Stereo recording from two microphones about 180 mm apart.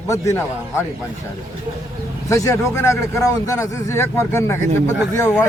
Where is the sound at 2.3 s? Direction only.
15° left (ahead or behind).